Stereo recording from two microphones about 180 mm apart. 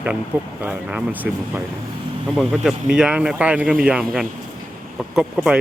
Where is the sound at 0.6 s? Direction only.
5° right (ahead or behind).